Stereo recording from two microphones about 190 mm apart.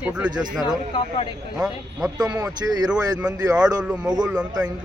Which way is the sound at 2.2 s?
15° right (ahead or behind).